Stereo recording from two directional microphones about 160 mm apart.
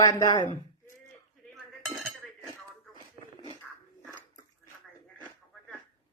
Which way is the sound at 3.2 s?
35° right (ahead or behind).